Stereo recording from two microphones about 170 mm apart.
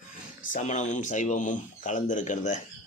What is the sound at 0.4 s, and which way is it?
Speech, 45° left (ahead or behind).